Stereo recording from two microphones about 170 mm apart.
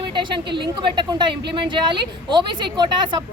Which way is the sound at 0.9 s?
25° right (ahead or behind).